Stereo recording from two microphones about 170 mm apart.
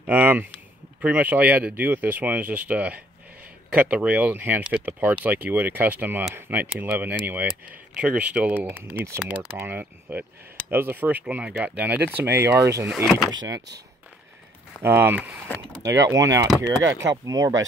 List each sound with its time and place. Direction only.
0.0 s speech: 10° right (ahead or behind)
12.8 s speech: centre (ahead or behind)
14.8 s speech: 15° right (ahead or behind)